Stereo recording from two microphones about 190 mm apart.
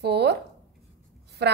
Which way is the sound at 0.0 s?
60° right (ahead or behind).